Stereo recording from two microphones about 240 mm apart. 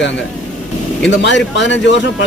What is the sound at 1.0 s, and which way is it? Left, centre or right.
Speech, left.